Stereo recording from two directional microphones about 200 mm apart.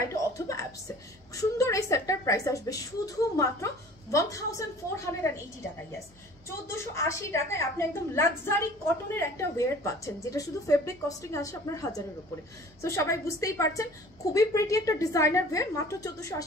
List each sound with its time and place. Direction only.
0.1 s a woman's voice: 15° left (ahead or behind)
6.7 s a woman's voice: 15° left (ahead or behind)